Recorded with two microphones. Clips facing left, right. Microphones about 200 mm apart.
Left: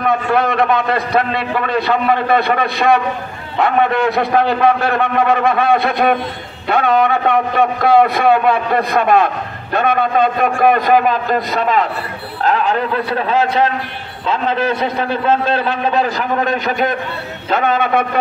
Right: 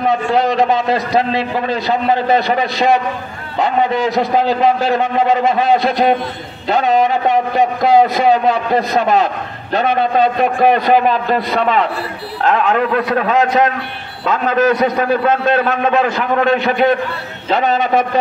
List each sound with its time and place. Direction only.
0.3 s a man's voice: 55° left (ahead or behind)